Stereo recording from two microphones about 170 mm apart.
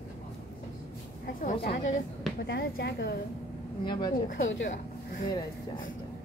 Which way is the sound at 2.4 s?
70° left (ahead or behind).